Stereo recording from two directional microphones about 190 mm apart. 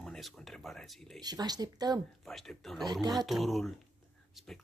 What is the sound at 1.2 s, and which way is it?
Speech, 20° right (ahead or behind).